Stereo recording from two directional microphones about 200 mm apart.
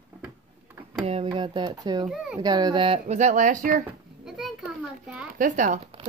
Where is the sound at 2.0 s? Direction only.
5° right (ahead or behind).